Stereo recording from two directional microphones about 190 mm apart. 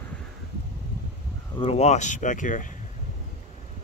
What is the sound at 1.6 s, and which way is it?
Speech, 35° left (ahead or behind).